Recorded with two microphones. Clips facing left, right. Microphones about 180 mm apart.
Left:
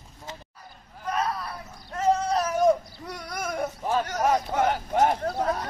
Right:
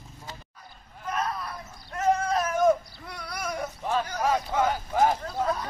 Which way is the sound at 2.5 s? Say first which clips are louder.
Left 1 dB; 40° left (ahead or behind).